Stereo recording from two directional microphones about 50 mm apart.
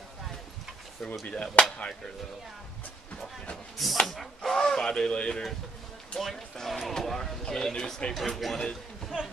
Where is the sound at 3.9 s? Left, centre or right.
Centre.